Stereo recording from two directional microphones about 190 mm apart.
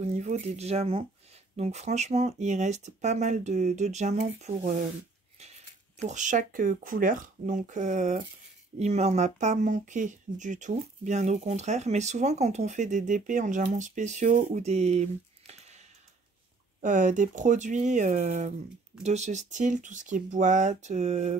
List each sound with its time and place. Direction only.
0.0 s speech: 35° right (ahead or behind)
5.9 s speech: 40° right (ahead or behind)
16.8 s speech: 40° right (ahead or behind)